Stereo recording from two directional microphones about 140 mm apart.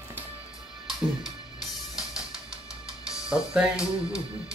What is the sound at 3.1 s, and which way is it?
Speech, 5° right (ahead or behind).